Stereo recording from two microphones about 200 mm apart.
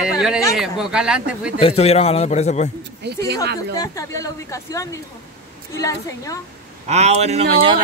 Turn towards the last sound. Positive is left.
turn(degrees=-30)  # may be behind; listen again after turning